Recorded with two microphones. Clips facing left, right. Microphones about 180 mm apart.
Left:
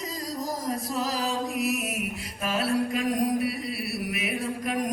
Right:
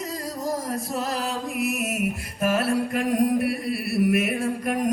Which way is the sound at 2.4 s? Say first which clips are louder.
Right 3 dB; 60° right (ahead or behind).